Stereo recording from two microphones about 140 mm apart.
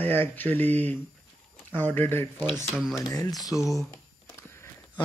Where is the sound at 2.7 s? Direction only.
5° right (ahead or behind).